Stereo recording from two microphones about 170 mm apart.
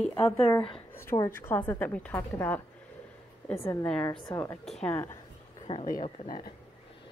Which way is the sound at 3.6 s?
15° left (ahead or behind).